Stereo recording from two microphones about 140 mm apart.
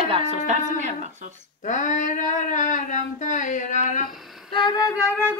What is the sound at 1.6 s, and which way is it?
Speech, 60° left (ahead or behind).